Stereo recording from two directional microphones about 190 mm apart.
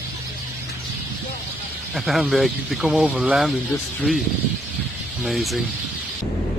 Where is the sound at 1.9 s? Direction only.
Centre (ahead or behind).